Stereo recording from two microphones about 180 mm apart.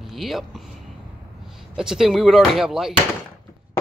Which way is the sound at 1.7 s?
5° right (ahead or behind).